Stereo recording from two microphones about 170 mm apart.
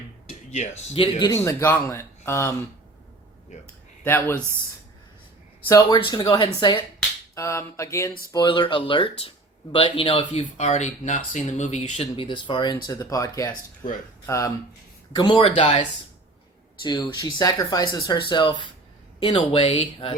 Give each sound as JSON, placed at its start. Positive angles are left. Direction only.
{"t": 0.3, "sound": "speech", "side_deg": 40}
{"t": 1.3, "sound": "speech", "side_deg": 20}
{"t": 4.0, "sound": "speech", "side_deg": 10}
{"t": 5.6, "sound": "speech", "side_deg": 15}
{"t": 6.0, "sound": "speech", "side_deg": 30}
{"t": 7.3, "sound": "speech", "side_deg": 15}
{"t": 15.1, "sound": "speech", "side_deg": 30}
{"t": 16.8, "sound": "speech", "side_deg": 25}